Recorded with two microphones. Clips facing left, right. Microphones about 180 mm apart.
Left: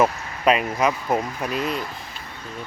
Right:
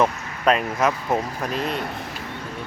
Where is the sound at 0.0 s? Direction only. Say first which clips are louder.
Left 1 dB; centre (ahead or behind).